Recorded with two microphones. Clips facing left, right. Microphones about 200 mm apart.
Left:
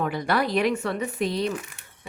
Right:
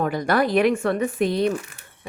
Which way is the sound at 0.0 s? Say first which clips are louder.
Right 4 dB; 45° right (ahead or behind).